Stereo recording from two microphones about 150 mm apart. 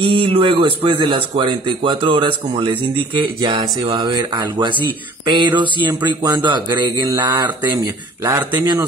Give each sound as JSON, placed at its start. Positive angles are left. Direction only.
{"t": 0.0, "sound": "speech", "side_deg": -35}